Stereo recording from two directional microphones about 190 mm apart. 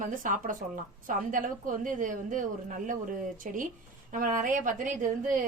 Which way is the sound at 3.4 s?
45° right (ahead or behind).